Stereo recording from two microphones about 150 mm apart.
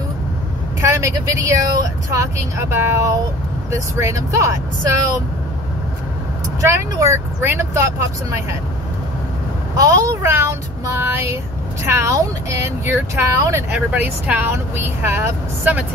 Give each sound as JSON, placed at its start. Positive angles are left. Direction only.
{"t": 0.7, "sound": "speech", "side_deg": -20}
{"t": 6.6, "sound": "speech", "side_deg": -20}
{"t": 9.8, "sound": "speech", "side_deg": -20}